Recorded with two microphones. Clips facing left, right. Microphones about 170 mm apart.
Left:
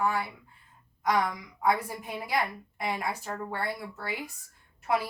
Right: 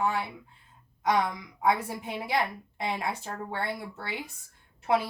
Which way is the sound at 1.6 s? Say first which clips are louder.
Right 1 dB; 25° right (ahead or behind).